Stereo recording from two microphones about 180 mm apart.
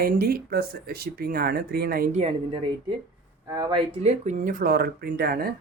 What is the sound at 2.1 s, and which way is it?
Speech, 35° right (ahead or behind).